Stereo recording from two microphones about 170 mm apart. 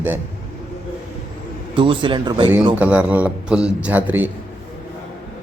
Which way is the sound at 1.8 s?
30° right (ahead or behind).